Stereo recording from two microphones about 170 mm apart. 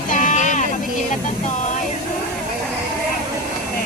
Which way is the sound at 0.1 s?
50° left (ahead or behind).